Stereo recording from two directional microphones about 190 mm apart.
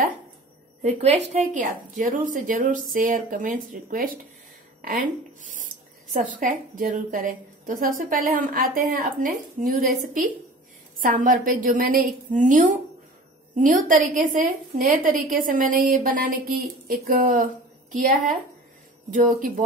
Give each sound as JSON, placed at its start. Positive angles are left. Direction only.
{"t": 0.8, "sound": "a woman's voice", "side_deg": -35}
{"t": 5.4, "sound": "a sound", "side_deg": -45}
{"t": 6.2, "sound": "a woman's voice", "side_deg": -45}